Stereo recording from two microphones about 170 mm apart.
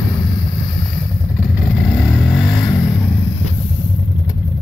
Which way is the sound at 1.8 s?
5° left (ahead or behind).